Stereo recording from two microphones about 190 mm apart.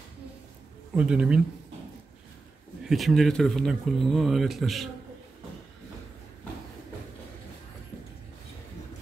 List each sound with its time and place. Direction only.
0.9 s speech: 5° right (ahead or behind)
2.8 s speech: centre (ahead or behind)